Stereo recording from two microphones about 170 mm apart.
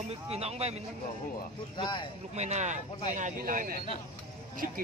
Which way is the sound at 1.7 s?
30° left (ahead or behind).